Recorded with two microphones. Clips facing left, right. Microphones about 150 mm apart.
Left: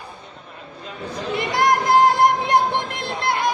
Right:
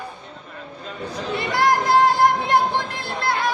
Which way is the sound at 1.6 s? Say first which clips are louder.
Left 1 dB; 20° left (ahead or behind).